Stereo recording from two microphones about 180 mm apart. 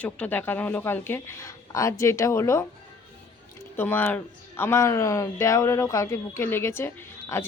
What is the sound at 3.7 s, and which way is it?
Speech, 10° left (ahead or behind).